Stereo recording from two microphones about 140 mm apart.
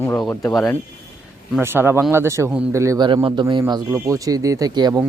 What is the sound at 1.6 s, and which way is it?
A man's voice, 15° right (ahead or behind).